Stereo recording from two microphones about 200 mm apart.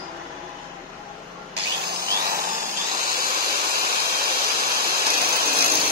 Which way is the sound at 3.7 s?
50° right (ahead or behind).